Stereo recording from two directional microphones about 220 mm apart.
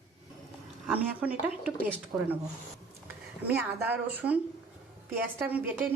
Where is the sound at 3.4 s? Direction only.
10° right (ahead or behind).